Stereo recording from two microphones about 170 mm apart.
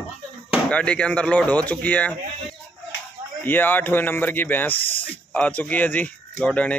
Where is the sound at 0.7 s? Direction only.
5° left (ahead or behind).